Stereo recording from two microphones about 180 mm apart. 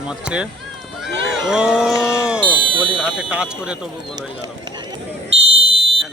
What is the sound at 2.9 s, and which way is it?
Speech, 5° right (ahead or behind).